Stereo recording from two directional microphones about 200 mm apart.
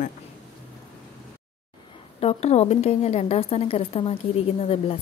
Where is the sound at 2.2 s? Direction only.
30° left (ahead or behind).